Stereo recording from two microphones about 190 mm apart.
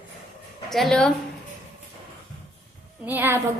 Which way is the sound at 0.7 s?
Centre (ahead or behind).